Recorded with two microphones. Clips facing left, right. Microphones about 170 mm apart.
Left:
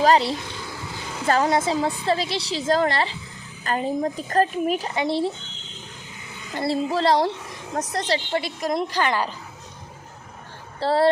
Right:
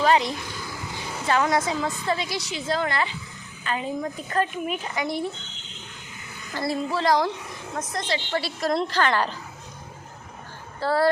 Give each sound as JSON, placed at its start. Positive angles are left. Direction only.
{"t": 0.0, "sound": "speech", "side_deg": 35}
{"t": 6.5, "sound": "a woman's voice", "side_deg": 25}
{"t": 8.4, "sound": "a woman's voice", "side_deg": 15}
{"t": 10.8, "sound": "speech", "side_deg": 25}